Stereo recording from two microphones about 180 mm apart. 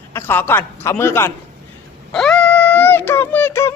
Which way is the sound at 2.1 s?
5° left (ahead or behind).